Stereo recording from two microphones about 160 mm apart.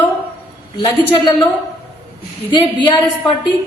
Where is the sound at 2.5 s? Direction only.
30° left (ahead or behind).